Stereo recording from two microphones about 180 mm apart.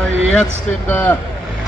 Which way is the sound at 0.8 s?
15° left (ahead or behind).